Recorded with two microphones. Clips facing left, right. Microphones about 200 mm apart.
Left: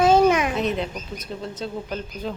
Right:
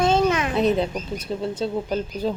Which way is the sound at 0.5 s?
35° right (ahead or behind).